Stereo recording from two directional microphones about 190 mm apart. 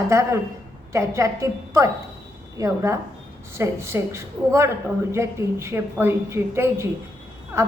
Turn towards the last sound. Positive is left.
turn(degrees=-15)  # may be behind; listen again after turning